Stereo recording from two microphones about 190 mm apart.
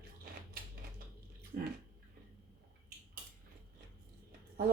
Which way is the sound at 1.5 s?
55° right (ahead or behind).